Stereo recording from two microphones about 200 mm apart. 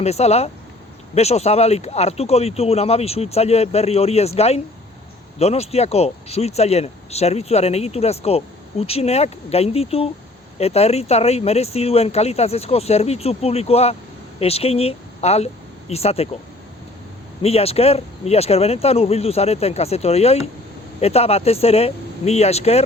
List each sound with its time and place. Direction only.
0.0 s speech: 30° left (ahead or behind)
17.4 s speech: 30° left (ahead or behind)